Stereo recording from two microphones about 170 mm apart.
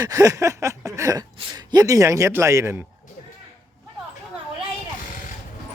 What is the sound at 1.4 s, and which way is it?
A man's voice, 25° right (ahead or behind).